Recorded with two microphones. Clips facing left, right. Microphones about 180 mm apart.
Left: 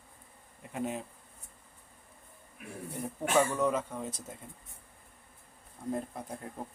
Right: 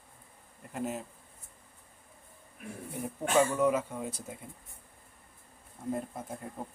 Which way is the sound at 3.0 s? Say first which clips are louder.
Right 1 dB; 10° right (ahead or behind).